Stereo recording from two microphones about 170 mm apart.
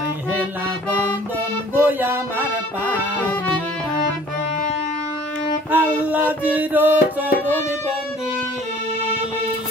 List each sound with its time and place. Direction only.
1.7 s music: 10° right (ahead or behind)
5.7 s music: 10° right (ahead or behind)